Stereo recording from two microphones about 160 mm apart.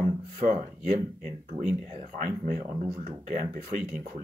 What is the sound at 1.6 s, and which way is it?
Speech, 35° right (ahead or behind).